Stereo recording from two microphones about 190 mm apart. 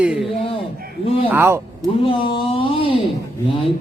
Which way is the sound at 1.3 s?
10° right (ahead or behind).